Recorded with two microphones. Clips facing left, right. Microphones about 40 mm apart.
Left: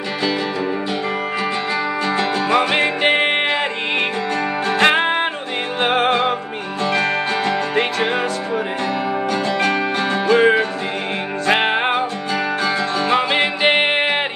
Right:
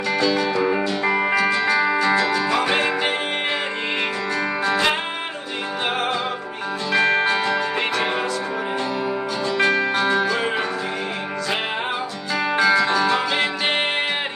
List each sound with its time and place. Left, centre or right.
2.1 s music: left
4.6 s music: left
7.4 s music: left
10.2 s music: left
12.5 s music: right
12.9 s music: left